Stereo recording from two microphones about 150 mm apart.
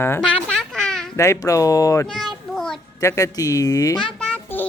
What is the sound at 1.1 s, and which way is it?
Speech, 20° left (ahead or behind).